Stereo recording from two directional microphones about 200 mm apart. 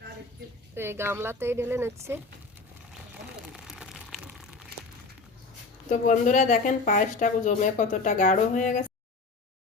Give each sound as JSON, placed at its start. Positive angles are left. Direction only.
{"t": 0.8, "sound": "speech", "side_deg": -10}
{"t": 3.5, "sound": "a sound", "side_deg": 0}
{"t": 5.9, "sound": "speech", "side_deg": 40}